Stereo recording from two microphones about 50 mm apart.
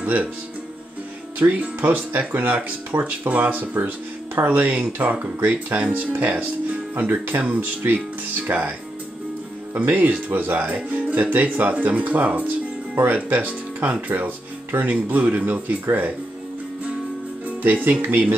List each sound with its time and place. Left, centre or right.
0.0 s speech: right
1.4 s speech: right
9.8 s speech: right